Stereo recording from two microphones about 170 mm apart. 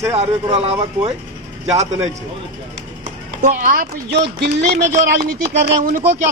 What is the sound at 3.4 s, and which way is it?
Speech, 45° right (ahead or behind).